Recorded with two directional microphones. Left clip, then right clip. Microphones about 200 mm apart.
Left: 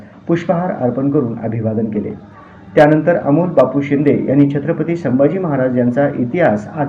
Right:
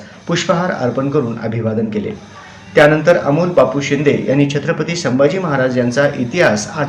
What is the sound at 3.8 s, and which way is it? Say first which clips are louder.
Speech: even; 20° right (ahead or behind).